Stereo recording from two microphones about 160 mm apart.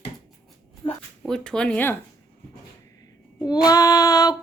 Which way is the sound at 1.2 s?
5° left (ahead or behind).